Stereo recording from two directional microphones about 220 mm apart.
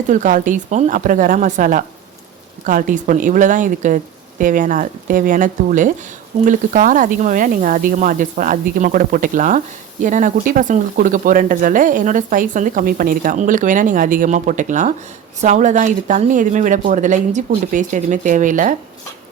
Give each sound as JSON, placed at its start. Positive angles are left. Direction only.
{"t": 0.1, "sound": "speech", "side_deg": -35}